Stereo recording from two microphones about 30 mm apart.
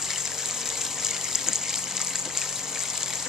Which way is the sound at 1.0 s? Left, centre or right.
Centre.